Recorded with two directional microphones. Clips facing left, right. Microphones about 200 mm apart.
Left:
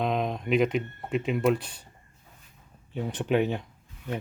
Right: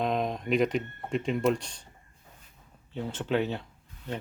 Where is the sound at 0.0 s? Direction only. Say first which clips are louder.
Left 1 dB; centre (ahead or behind).